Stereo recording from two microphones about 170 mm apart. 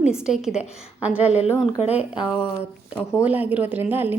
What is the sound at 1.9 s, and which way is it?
Speech, 35° left (ahead or behind).